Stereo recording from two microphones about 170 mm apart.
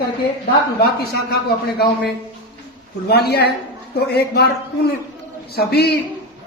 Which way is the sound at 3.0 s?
70° left (ahead or behind).